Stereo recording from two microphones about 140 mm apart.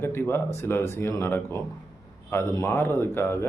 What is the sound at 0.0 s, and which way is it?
Speech, 15° left (ahead or behind).